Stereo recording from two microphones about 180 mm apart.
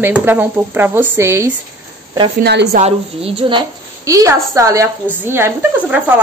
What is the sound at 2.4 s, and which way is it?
Speech, 65° right (ahead or behind).